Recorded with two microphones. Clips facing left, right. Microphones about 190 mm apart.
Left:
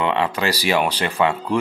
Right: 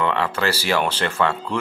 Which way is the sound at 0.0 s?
20° left (ahead or behind).